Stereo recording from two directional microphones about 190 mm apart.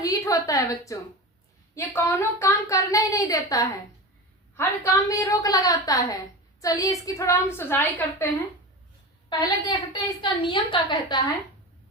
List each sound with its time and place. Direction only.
0.0 s a woman's voice: 20° left (ahead or behind)
9.4 s a woman's voice: 20° left (ahead or behind)